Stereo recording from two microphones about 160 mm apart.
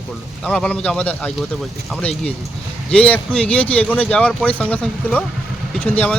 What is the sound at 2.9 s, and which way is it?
Speech, 10° left (ahead or behind).